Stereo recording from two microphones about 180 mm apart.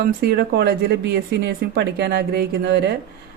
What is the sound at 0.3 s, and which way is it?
Speech, 65° right (ahead or behind).